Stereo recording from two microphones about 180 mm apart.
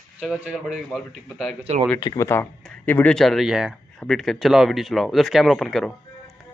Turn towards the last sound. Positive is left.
turn(degrees=0)  # may be behind; listen again after turning